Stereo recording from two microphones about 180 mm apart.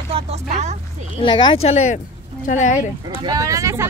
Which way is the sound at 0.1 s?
35° right (ahead or behind).